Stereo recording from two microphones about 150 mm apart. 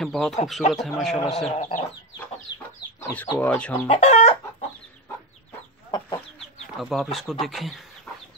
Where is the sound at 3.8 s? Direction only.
45° left (ahead or behind).